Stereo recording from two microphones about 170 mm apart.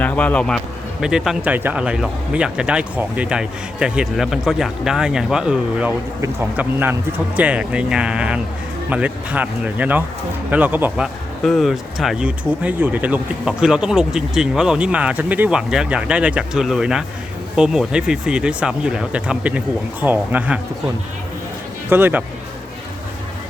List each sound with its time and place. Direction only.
0.0 s speech: 10° left (ahead or behind); by 20.6 s 10° right (ahead or behind)
21.8 s speech: 10° right (ahead or behind)